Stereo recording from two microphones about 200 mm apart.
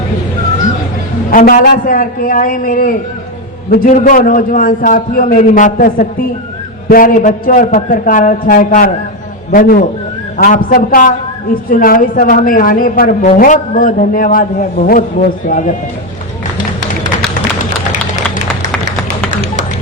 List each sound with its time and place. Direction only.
1.3 s a woman's voice: 45° left (ahead or behind)